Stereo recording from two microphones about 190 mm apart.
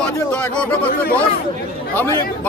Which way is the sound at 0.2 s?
10° left (ahead or behind).